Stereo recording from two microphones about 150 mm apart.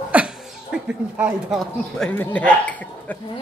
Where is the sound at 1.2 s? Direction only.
10° right (ahead or behind).